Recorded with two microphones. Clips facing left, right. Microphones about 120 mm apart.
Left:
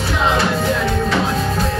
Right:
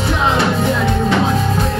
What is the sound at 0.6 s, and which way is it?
Music, 20° right (ahead or behind).